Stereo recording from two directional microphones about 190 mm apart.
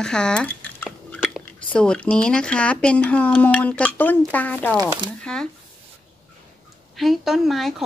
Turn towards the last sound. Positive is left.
turn(degrees=0)  # may be behind; listen again after turning